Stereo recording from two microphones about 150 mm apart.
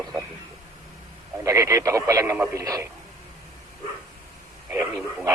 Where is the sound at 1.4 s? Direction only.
20° right (ahead or behind).